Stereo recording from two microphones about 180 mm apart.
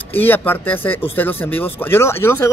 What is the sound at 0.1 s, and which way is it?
Speech, 10° left (ahead or behind).